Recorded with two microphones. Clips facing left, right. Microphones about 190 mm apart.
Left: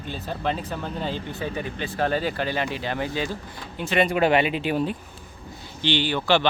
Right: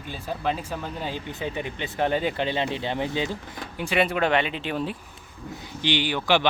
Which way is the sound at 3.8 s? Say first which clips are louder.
Left 2 dB; 5° right (ahead or behind).